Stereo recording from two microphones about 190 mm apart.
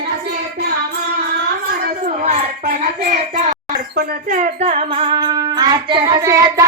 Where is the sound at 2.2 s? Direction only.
40° right (ahead or behind); by 6.6 s 15° right (ahead or behind).